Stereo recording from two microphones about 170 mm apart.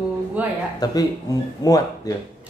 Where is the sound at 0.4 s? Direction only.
10° right (ahead or behind).